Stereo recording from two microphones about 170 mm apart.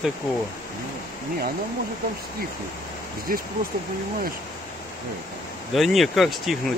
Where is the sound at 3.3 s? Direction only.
55° right (ahead or behind).